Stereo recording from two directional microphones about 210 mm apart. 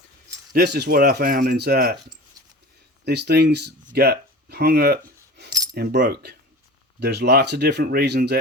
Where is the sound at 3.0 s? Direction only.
50° right (ahead or behind).